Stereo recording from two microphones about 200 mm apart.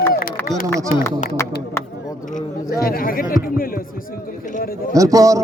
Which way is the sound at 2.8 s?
45° left (ahead or behind).